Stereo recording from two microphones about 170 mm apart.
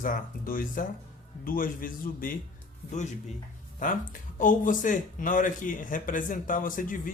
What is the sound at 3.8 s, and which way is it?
Speech, 50° left (ahead or behind).